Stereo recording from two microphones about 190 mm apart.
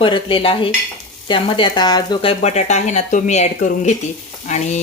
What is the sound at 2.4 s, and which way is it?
Frying, 35° left (ahead or behind).